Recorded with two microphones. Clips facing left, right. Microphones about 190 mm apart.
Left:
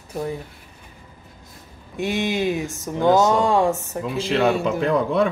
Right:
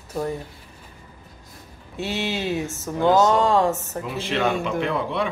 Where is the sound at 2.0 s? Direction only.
15° left (ahead or behind).